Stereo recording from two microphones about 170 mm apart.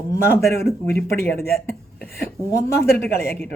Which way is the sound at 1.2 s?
10° left (ahead or behind).